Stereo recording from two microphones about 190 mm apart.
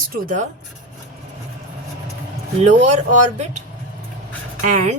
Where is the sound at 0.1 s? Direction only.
45° right (ahead or behind).